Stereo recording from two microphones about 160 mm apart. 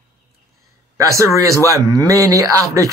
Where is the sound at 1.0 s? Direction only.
20° right (ahead or behind).